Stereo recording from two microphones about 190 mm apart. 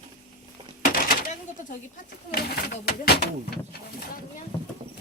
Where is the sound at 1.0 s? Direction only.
45° left (ahead or behind).